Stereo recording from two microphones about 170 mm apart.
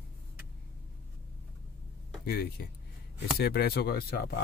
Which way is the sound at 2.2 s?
65° left (ahead or behind).